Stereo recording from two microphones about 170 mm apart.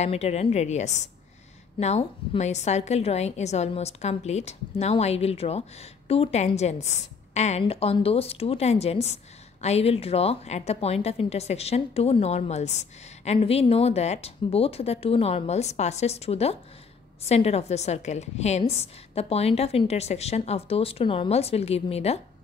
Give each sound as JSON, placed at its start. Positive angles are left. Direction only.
{"t": 0.0, "sound": "a woman's voice", "side_deg": 40}